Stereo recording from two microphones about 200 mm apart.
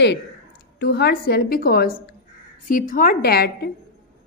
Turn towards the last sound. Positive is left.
turn(degrees=50)  # may be behind; listen again after turning